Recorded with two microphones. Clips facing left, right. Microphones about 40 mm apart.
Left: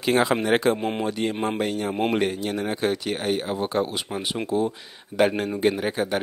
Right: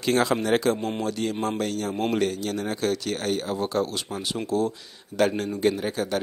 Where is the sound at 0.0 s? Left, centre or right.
Centre.